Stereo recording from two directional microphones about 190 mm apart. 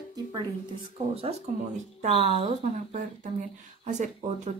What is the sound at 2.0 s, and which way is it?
A woman's voice, 35° right (ahead or behind).